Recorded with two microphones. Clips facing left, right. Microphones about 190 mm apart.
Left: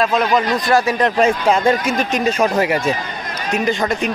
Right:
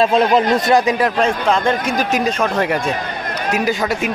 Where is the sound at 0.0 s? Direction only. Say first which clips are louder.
Right 3 dB; 25° right (ahead or behind).